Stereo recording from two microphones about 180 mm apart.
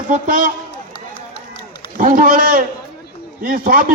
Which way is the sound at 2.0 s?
50° right (ahead or behind).